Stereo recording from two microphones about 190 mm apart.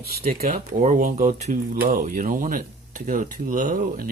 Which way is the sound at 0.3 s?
40° right (ahead or behind).